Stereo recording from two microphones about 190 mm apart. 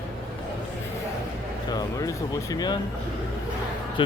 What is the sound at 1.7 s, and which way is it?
Speech, 20° left (ahead or behind).